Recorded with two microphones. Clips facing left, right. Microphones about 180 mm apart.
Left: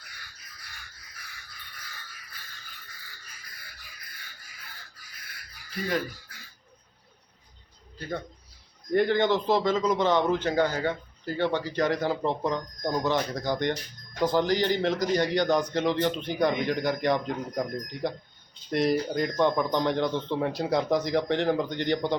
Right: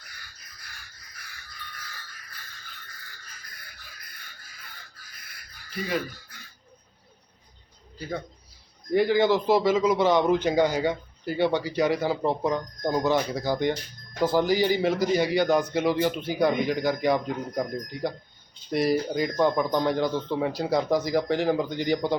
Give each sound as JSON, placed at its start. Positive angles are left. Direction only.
{"t": 8.9, "sound": "a man's voice", "side_deg": -5}